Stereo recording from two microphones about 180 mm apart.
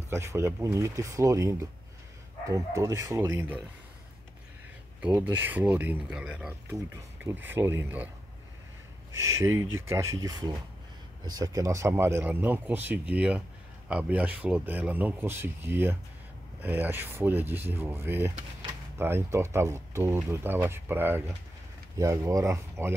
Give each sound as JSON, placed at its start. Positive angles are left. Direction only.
{"t": 0.1, "sound": "speech", "side_deg": -15}
{"t": 5.3, "sound": "speech", "side_deg": -10}
{"t": 9.1, "sound": "speech", "side_deg": -15}